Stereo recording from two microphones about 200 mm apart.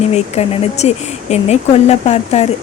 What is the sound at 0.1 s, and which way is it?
Speech, 30° left (ahead or behind).